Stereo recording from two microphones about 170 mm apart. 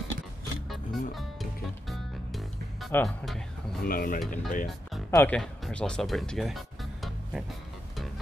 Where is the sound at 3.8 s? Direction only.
60° left (ahead or behind).